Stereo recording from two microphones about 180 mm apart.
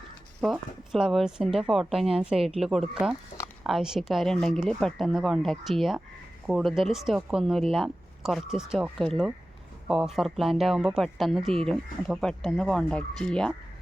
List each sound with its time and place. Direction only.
0.4 s speech: 5° right (ahead or behind)